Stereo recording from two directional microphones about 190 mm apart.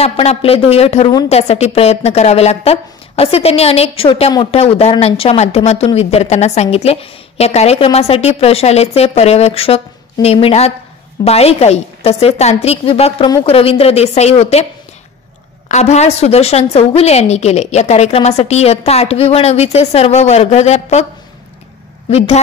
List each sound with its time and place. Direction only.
0.0 s a woman's voice: 30° left (ahead or behind)
15.7 s a woman's voice: 35° left (ahead or behind)
22.1 s a woman's voice: 35° left (ahead or behind)